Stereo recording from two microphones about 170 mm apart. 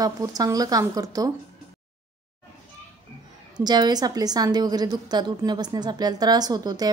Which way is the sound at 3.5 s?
25° right (ahead or behind).